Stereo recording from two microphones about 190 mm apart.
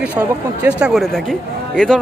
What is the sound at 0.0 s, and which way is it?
Speech, 10° right (ahead or behind).